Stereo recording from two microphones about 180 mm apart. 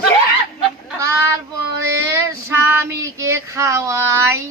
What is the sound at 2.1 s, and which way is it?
Child singing, 15° right (ahead or behind).